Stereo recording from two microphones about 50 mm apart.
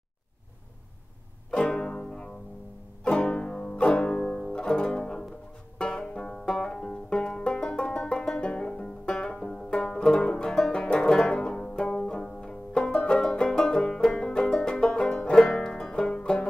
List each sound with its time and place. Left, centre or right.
1.5 s music: centre
5.8 s banjo: centre
6.8 s banjo: centre
10.7 s music: centre
12.9 s banjo: centre